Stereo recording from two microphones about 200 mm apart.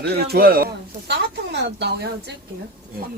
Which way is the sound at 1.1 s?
60° right (ahead or behind).